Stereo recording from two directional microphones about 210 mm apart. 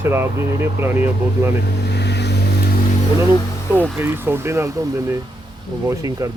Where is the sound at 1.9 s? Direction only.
55° left (ahead or behind).